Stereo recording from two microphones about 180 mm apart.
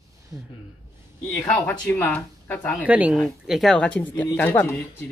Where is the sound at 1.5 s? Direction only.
10° left (ahead or behind).